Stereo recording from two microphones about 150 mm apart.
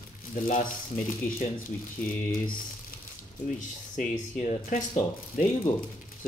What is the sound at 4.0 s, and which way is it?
Speech, 55° left (ahead or behind).